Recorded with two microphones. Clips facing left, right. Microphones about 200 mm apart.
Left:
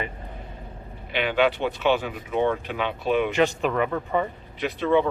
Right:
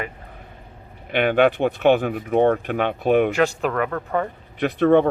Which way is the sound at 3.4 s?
Centre (ahead or behind).